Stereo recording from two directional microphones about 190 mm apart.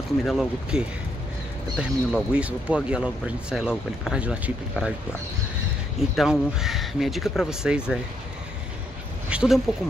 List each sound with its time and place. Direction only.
0.2 s speech: centre (ahead or behind)
6.1 s speech: centre (ahead or behind)
9.3 s speech: 5° right (ahead or behind)